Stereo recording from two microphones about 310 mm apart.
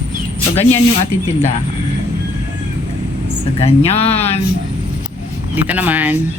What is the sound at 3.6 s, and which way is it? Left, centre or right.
Speech, centre.